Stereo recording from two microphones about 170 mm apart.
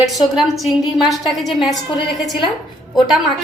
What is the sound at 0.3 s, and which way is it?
A woman's voice, centre (ahead or behind).